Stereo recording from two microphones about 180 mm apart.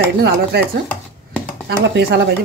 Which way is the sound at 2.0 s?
70° right (ahead or behind).